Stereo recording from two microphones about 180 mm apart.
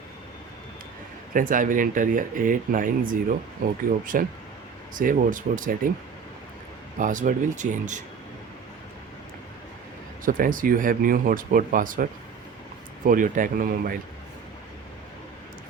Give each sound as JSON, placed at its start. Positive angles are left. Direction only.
{"t": 1.3, "sound": "speech", "side_deg": -50}
{"t": 7.0, "sound": "speech", "side_deg": -45}
{"t": 10.2, "sound": "speech", "side_deg": -50}
{"t": 13.1, "sound": "speech", "side_deg": -45}